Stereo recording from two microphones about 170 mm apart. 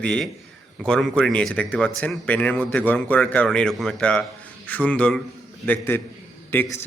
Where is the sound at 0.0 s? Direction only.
5° left (ahead or behind).